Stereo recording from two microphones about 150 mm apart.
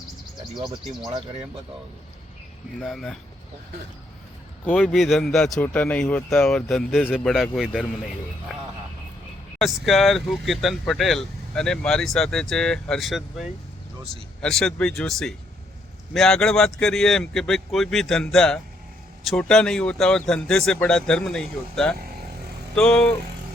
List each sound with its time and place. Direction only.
0.6 s speech: 30° right (ahead or behind)
2.7 s speech: centre (ahead or behind)
4.6 s speech: 5° left (ahead or behind)
9.6 s speech: centre (ahead or behind)